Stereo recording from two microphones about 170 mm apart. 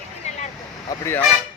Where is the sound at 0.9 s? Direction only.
15° left (ahead or behind).